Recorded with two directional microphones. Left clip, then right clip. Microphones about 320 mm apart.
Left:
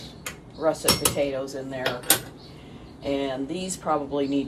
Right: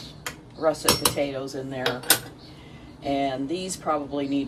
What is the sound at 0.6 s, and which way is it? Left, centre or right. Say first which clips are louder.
Speech: right 1 dB; centre.